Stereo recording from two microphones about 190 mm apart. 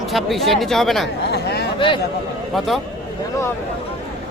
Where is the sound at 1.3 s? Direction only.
60° left (ahead or behind).